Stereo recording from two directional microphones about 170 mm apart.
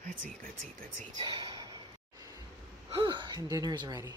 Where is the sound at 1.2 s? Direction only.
25° right (ahead or behind).